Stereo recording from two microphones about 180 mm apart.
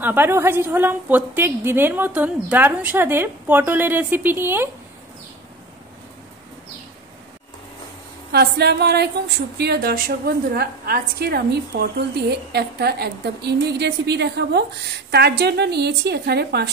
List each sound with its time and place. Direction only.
0.0 s a woman's voice: 10° right (ahead or behind)
8.3 s a woman's voice: 65° right (ahead or behind)